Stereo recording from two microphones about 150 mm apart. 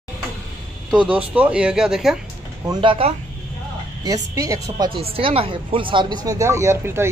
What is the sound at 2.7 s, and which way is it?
Speech, 35° right (ahead or behind).